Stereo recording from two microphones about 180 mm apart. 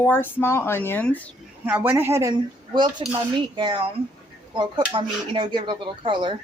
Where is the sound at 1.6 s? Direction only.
10° right (ahead or behind).